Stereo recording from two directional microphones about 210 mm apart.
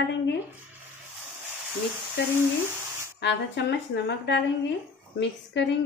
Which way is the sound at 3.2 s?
55° left (ahead or behind).